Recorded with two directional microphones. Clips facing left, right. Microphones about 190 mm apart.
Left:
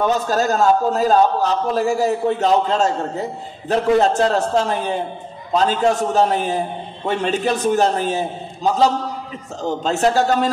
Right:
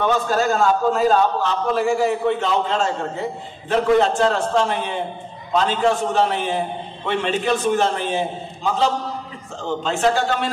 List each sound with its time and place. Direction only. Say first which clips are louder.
0.0 s a man's voice: left 1 dB; 40° left (ahead or behind)